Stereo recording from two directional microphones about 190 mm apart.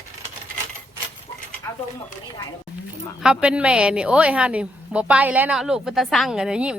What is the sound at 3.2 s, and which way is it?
A woman's voice, 5° right (ahead or behind).